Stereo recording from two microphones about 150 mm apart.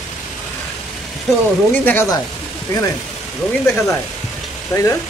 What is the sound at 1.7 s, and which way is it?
Speech, 10° left (ahead or behind).